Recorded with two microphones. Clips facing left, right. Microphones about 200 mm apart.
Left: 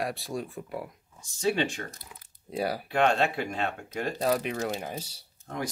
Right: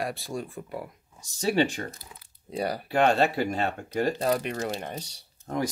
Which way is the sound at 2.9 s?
40° right (ahead or behind).